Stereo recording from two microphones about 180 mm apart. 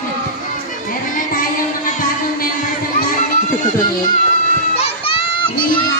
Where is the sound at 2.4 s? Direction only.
50° left (ahead or behind).